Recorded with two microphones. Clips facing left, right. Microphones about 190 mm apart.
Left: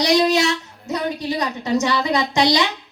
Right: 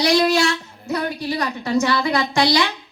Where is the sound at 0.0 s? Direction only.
20° left (ahead or behind).